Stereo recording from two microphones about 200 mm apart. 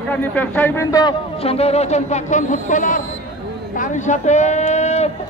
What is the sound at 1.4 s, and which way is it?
A man's voice, 30° left (ahead or behind).